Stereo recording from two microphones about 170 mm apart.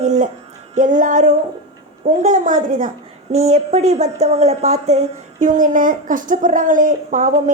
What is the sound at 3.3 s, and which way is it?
A woman's voice, 40° right (ahead or behind).